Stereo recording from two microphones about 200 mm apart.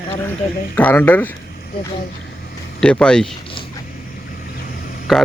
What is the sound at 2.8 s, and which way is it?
Speech, 5° left (ahead or behind).